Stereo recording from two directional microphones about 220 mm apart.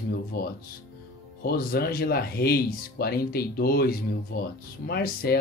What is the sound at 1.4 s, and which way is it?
Speech, 45° left (ahead or behind).